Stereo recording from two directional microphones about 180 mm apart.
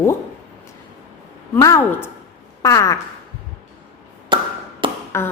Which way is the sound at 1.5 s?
15° left (ahead or behind).